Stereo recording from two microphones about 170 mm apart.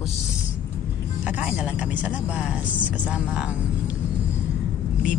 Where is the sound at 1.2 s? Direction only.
5° right (ahead or behind).